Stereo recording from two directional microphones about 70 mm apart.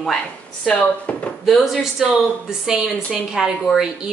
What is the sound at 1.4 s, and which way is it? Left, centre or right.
Speech, centre.